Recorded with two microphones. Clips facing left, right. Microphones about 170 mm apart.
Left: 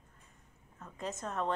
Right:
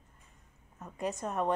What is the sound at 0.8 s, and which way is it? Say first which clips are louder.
Speech: right 5 dB; 15° right (ahead or behind).